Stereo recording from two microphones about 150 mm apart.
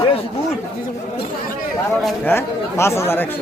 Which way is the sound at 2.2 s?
15° left (ahead or behind).